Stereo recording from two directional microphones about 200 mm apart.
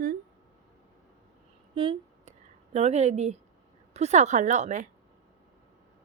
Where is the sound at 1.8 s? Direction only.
30° right (ahead or behind).